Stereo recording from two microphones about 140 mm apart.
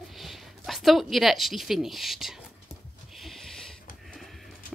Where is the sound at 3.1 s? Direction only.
Centre (ahead or behind).